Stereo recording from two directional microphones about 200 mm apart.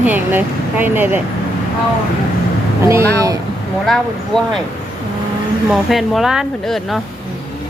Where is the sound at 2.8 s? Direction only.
15° right (ahead or behind).